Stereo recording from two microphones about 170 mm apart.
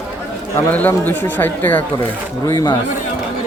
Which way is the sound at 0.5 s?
10° left (ahead or behind).